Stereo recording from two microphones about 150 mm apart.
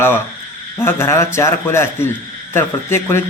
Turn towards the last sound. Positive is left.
turn(degrees=15)  # may be behind; listen again after turning